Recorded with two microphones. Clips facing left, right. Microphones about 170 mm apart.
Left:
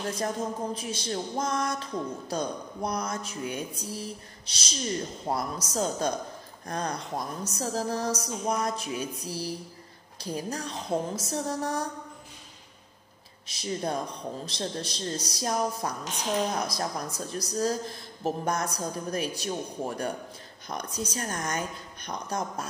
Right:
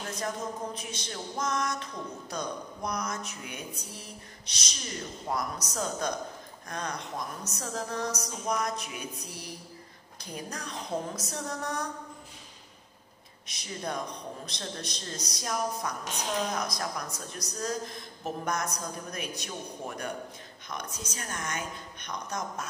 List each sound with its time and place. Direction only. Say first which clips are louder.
0.7 s music: left 6 dB; 30° left (ahead or behind)
5.2 s speech: left 2 dB; 30° left (ahead or behind)
6.7 s music: left 4 dB; 35° left (ahead or behind)
13.5 s speech: left 5 dB; 30° left (ahead or behind)
16.4 s music: left 3 dB; 30° left (ahead or behind)